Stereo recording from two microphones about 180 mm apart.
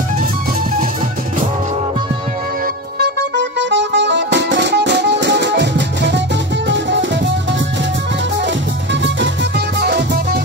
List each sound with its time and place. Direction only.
3.0 s music: 80° right
9.0 s music: 70° right (ahead or behind)